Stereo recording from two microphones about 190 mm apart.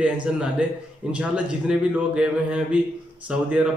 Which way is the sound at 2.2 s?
5° right (ahead or behind).